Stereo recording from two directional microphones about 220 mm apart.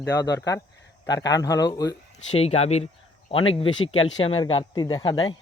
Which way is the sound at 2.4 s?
30° left (ahead or behind).